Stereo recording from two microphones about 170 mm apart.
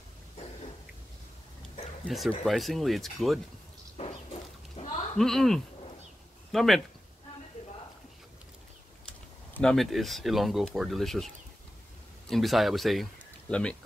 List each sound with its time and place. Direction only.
2.0 s speech: centre (ahead or behind)
4.0 s a sound: 40° left (ahead or behind)
5.1 s speech: centre (ahead or behind)
9.0 s speech: 5° left (ahead or behind)